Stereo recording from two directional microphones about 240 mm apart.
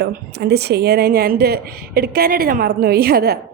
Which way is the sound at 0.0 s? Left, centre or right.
Right.